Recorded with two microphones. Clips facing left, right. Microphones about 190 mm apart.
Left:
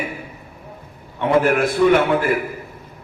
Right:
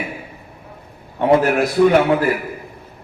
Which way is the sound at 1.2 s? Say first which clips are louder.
Right 2 dB; 40° right (ahead or behind).